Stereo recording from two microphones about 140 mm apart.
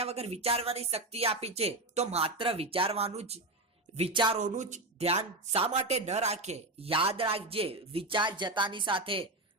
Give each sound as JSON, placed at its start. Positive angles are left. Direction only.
{"t": 0.0, "sound": "speech", "side_deg": -50}
{"t": 4.4, "sound": "speech", "side_deg": -60}